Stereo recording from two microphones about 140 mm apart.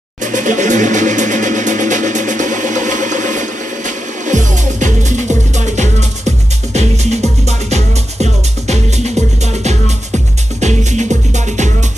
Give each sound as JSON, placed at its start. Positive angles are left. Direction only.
{"t": 0.2, "sound": "music", "side_deg": -60}
{"t": 10.6, "sound": "music", "side_deg": -55}